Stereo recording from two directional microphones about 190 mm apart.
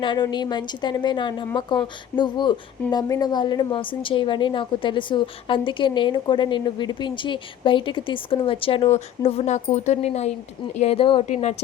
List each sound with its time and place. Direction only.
0.0 s a woman's voice: 25° left (ahead or behind)